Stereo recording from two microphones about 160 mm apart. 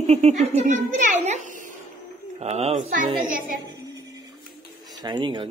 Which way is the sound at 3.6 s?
25° right (ahead or behind).